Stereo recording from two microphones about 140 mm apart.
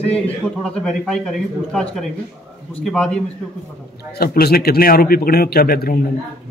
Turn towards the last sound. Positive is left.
turn(degrees=90)